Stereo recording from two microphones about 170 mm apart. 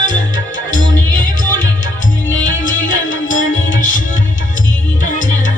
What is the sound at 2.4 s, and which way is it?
Music, 50° left (ahead or behind).